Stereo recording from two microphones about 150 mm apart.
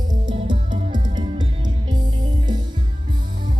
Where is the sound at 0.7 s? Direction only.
55° right (ahead or behind).